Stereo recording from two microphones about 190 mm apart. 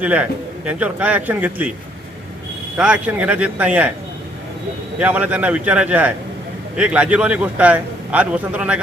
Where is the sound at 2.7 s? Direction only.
5° right (ahead or behind).